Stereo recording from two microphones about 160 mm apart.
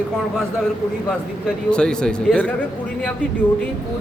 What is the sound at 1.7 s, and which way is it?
Speech, 5° left (ahead or behind).